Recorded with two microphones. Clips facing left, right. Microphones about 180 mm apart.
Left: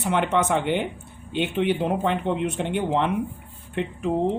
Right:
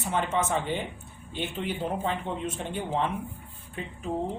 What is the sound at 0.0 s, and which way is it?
A woman's voice, 70° left (ahead or behind).